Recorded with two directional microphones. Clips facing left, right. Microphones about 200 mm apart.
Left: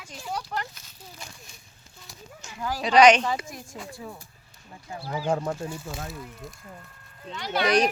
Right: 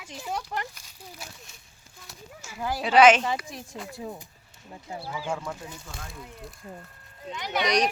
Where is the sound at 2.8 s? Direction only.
5° right (ahead or behind).